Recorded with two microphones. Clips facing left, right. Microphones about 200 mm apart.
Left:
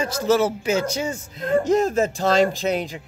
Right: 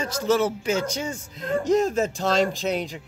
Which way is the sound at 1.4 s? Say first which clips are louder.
Left 2 dB; 55° left (ahead or behind).